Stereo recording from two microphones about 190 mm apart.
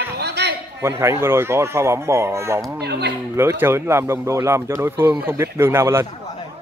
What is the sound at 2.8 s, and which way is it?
Speech, 60° right (ahead or behind).